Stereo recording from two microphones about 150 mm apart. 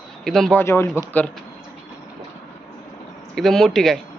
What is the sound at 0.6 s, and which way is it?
Speech, 15° left (ahead or behind).